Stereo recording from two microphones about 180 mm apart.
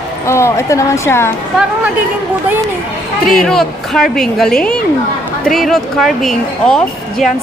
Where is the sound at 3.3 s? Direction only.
Centre (ahead or behind).